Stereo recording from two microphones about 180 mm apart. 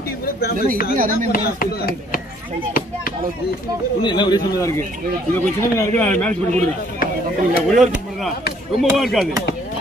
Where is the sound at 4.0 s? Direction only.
25° left (ahead or behind); by 6.3 s 10° left (ahead or behind).